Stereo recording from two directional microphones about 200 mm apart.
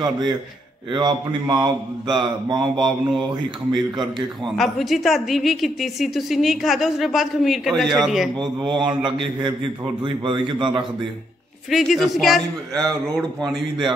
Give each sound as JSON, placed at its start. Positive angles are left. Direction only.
{"t": 0.0, "sound": "speech", "side_deg": -20}
{"t": 3.7, "sound": "a woman's voice", "side_deg": 0}
{"t": 8.4, "sound": "speech", "side_deg": -25}
{"t": 11.7, "sound": "a woman's voice", "side_deg": 0}